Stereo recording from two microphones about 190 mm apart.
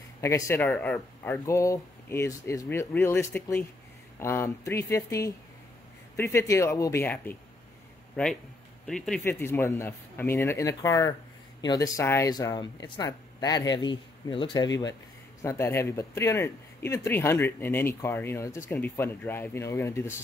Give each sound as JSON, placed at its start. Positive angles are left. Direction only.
{"t": 0.2, "sound": "speech", "side_deg": 15}
{"t": 8.8, "sound": "speech", "side_deg": 0}
{"t": 9.2, "sound": "speech", "side_deg": 10}
{"t": 15.4, "sound": "speech", "side_deg": 15}